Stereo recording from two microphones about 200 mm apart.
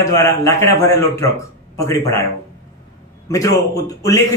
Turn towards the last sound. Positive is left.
turn(degrees=15)  # may be behind; listen again after turning